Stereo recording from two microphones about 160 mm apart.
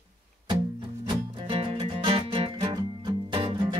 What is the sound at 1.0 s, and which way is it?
Music, 30° right (ahead or behind).